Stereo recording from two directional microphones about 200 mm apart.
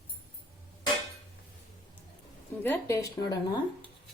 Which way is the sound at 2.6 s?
10° left (ahead or behind).